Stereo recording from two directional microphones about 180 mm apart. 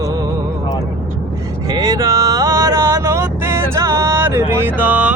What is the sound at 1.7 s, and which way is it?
Vehicle, 20° right (ahead or behind).